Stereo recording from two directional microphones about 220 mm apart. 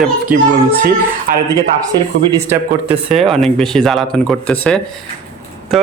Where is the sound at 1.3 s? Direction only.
40° right (ahead or behind).